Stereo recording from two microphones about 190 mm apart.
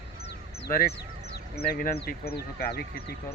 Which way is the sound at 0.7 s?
50° left (ahead or behind).